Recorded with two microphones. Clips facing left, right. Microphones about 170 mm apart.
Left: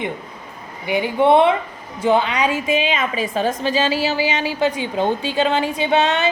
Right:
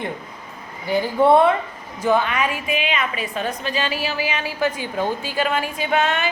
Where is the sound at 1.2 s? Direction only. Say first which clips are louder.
Left 1 dB; 20° left (ahead or behind).